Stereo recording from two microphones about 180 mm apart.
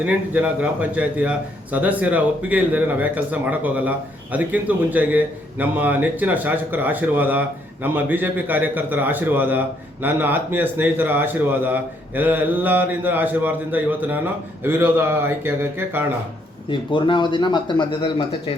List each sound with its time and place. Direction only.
0.0 s a man's voice: 5° right (ahead or behind)
16.6 s speech: 25° left (ahead or behind)